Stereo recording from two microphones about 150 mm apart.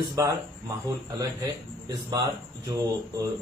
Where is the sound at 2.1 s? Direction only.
20° right (ahead or behind).